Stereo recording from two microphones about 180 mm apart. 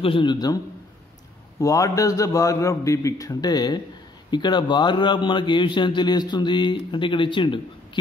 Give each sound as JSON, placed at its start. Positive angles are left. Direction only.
{"t": 0.0, "sound": "a man's voice", "side_deg": 30}
{"t": 1.6, "sound": "a man's voice", "side_deg": 20}